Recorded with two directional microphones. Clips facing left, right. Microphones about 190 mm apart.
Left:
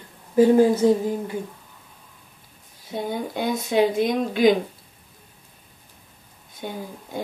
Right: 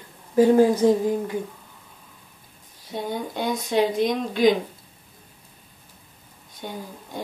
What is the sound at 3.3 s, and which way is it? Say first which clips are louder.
Speech: left 1 dB; 50° left (ahead or behind).